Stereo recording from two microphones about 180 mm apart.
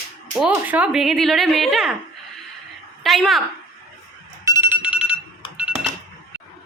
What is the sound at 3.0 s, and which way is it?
Speech, centre (ahead or behind).